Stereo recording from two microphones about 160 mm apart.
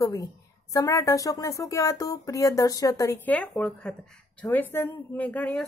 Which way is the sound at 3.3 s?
10° left (ahead or behind).